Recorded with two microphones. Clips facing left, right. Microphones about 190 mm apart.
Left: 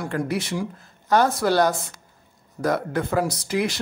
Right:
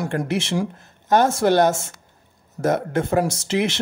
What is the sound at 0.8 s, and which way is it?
Speech, 20° right (ahead or behind).